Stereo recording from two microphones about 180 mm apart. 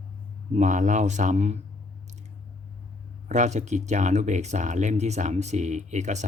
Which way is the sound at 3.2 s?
40° right (ahead or behind).